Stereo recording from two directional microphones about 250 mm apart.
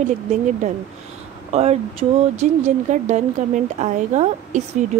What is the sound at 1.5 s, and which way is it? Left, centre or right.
Speech, right.